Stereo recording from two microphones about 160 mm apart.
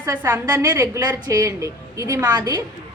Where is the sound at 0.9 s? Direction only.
25° right (ahead or behind).